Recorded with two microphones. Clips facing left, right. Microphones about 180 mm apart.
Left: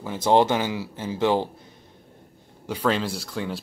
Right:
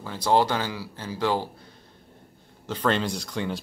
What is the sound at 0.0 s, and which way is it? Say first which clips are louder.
Speech: left 3 dB; 20° left (ahead or behind).